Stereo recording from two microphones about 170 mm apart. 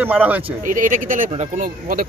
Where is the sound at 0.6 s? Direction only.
50° right (ahead or behind).